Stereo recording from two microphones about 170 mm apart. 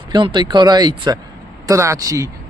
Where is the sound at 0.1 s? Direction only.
25° right (ahead or behind).